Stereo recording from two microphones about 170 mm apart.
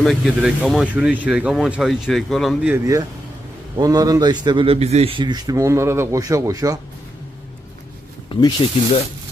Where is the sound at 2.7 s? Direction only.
20° right (ahead or behind).